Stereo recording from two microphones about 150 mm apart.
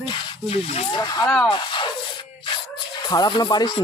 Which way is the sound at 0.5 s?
45° left (ahead or behind).